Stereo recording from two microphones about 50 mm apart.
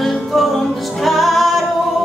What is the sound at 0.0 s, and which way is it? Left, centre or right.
Music, centre.